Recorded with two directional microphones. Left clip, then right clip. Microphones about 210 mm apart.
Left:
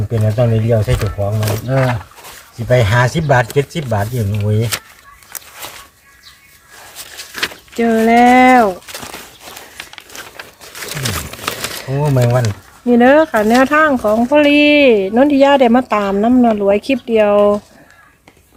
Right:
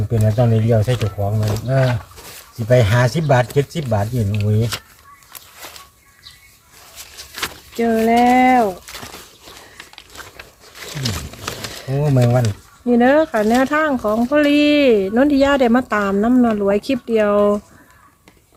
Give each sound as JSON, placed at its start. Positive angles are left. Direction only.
{"t": 0.1, "sound": "speech", "side_deg": 5}
{"t": 1.0, "sound": "speech", "side_deg": 20}
{"t": 2.6, "sound": "speech", "side_deg": 5}
{"t": 7.8, "sound": "speech", "side_deg": 15}
{"t": 10.1, "sound": "crumpling", "side_deg": 20}
{"t": 11.9, "sound": "speech", "side_deg": 10}